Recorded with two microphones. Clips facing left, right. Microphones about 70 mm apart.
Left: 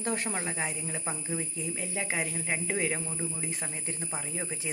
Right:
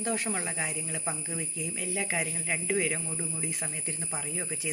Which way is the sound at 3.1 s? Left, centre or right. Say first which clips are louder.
Even; centre.